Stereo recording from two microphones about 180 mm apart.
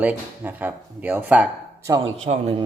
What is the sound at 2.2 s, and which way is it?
Speech, 35° right (ahead or behind).